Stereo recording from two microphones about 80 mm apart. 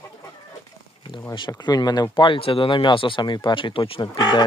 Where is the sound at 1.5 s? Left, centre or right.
Left.